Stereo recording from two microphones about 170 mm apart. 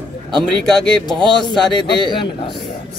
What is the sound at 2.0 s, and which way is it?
Speech, 30° left (ahead or behind).